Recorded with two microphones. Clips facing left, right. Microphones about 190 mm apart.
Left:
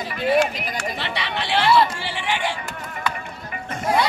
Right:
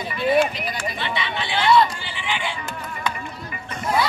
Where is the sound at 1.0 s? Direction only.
70° left (ahead or behind).